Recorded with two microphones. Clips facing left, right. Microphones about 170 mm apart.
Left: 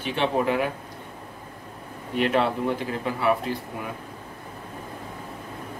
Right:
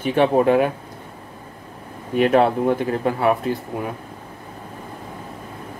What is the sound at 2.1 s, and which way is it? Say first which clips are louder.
Speech: right 7 dB; 50° right (ahead or behind).